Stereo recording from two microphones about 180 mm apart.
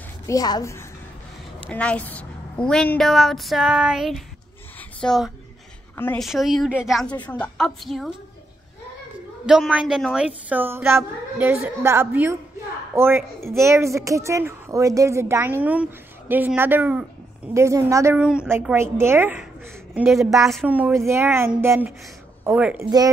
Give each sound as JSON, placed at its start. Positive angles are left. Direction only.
{"t": 0.3, "sound": "a woman's voice", "side_deg": 20}
{"t": 1.7, "sound": "a woman's voice", "side_deg": 5}
{"t": 5.9, "sound": "a woman's voice", "side_deg": 10}
{"t": 6.2, "sound": "a woman's voice", "side_deg": 0}
{"t": 9.5, "sound": "a woman's voice", "side_deg": -5}
{"t": 18.1, "sound": "a woman's voice", "side_deg": -5}
{"t": 19.9, "sound": "a woman's voice", "side_deg": 0}